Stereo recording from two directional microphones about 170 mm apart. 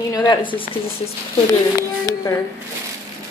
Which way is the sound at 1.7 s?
20° left (ahead or behind).